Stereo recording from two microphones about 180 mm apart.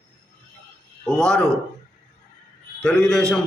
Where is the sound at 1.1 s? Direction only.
5° left (ahead or behind).